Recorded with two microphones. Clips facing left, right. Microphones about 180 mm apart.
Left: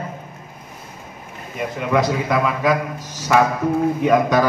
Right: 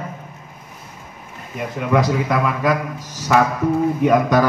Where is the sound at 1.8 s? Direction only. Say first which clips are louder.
Right 1 dB; centre (ahead or behind).